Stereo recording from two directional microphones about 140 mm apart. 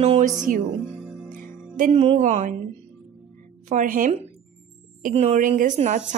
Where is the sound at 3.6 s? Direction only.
70° right (ahead or behind).